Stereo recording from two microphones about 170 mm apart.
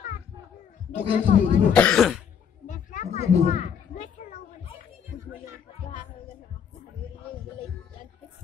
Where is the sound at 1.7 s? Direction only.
5° left (ahead or behind).